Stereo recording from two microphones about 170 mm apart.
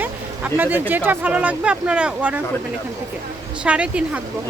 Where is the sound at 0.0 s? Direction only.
10° right (ahead or behind).